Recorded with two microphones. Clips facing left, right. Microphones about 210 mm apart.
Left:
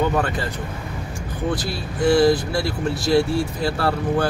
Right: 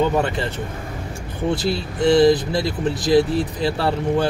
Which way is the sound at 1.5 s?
25° right (ahead or behind).